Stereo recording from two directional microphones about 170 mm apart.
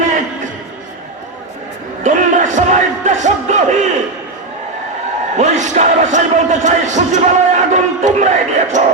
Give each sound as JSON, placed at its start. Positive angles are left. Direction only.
{"t": 2.0, "sound": "music", "side_deg": -45}
{"t": 5.4, "sound": "speech", "side_deg": -45}